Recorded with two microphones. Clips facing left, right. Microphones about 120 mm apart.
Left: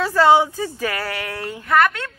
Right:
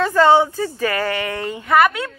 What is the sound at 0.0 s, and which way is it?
A woman's voice, 5° left (ahead or behind).